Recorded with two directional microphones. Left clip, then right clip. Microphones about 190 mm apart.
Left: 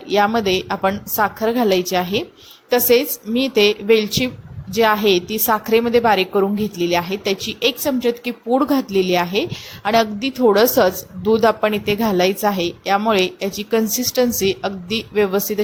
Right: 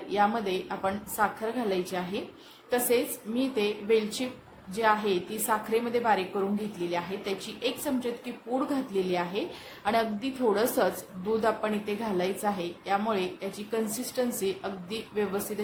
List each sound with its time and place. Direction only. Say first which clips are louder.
0.1 s a woman's voice: left 10 dB; 40° left (ahead or behind)